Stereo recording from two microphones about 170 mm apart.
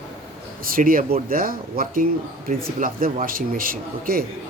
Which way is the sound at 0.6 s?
55° right (ahead or behind).